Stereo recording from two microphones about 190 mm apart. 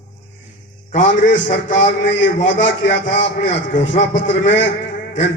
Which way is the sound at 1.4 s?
45° left (ahead or behind).